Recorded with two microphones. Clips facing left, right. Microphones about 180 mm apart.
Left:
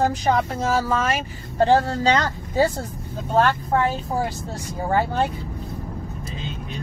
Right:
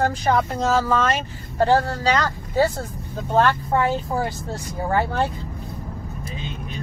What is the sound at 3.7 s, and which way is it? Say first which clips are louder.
Speech: right 1 dB; 10° left (ahead or behind).